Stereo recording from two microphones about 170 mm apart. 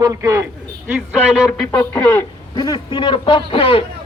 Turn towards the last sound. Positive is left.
turn(degrees=30)  # may be behind; listen again after turning